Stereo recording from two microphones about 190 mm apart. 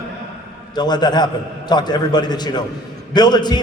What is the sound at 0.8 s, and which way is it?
A man's voice, 20° left (ahead or behind).